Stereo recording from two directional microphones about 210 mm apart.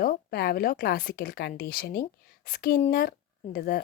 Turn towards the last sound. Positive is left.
turn(degrees=45)  # may be behind; listen again after turning